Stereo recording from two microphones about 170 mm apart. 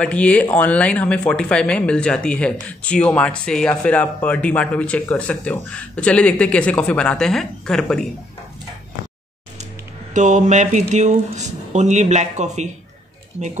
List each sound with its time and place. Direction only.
0.0 s speech: 5° left (ahead or behind)
10.1 s speech: 45° right (ahead or behind)